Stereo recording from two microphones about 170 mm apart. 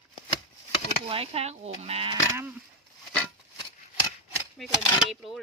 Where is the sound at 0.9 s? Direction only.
35° right (ahead or behind).